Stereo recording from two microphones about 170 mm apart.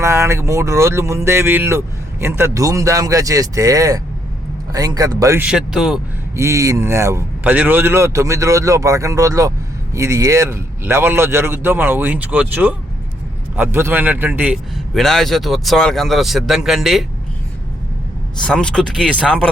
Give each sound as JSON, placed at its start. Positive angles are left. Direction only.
{"t": 0.0, "sound": "speech", "side_deg": -15}
{"t": 5.5, "sound": "speech", "side_deg": -5}
{"t": 6.3, "sound": "speech", "side_deg": -15}
{"t": 14.9, "sound": "speech", "side_deg": 0}
{"t": 18.4, "sound": "speech", "side_deg": 5}